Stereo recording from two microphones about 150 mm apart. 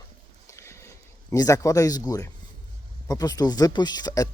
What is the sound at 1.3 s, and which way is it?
Speech, 20° left (ahead or behind).